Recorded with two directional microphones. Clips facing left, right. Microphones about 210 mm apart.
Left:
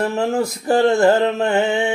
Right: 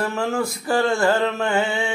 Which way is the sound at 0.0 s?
20° left (ahead or behind).